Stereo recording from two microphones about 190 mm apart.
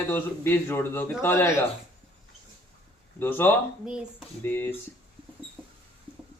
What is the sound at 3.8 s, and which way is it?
Speech, 5° right (ahead or behind).